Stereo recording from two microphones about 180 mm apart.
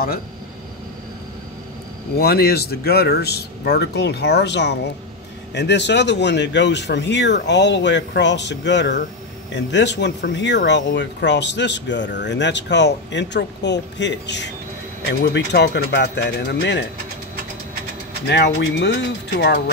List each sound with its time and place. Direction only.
2.1 s speech: 60° left (ahead or behind)
18.3 s speech: 75° left (ahead or behind)